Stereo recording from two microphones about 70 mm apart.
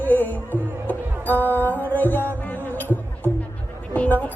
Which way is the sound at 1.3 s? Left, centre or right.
Right.